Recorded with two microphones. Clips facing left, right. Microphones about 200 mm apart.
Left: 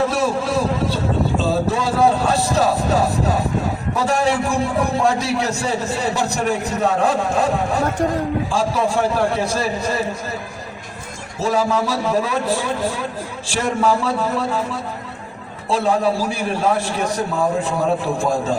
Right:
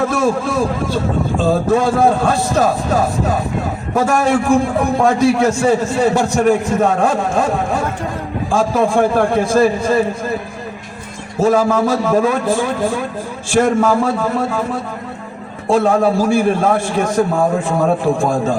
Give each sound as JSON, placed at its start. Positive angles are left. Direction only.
{"t": 0.0, "sound": "a man's voice", "side_deg": -50}
{"t": 11.3, "sound": "a man's voice", "side_deg": -50}